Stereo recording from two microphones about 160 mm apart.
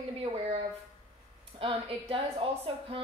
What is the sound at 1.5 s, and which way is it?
Speech, 35° right (ahead or behind).